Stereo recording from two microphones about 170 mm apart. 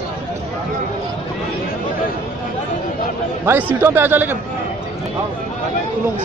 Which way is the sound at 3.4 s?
10° right (ahead or behind).